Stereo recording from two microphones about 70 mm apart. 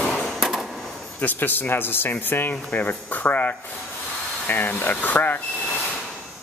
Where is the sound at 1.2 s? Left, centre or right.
Left.